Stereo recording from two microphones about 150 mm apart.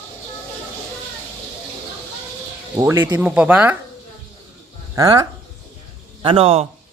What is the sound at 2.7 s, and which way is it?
Speech, 15° right (ahead or behind).